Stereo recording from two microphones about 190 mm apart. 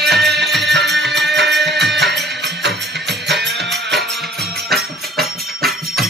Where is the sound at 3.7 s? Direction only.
Centre (ahead or behind).